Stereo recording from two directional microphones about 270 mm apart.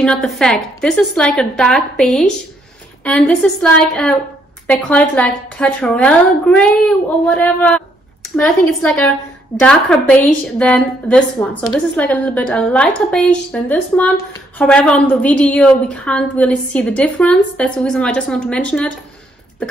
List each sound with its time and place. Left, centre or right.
0.0 s a woman's voice: centre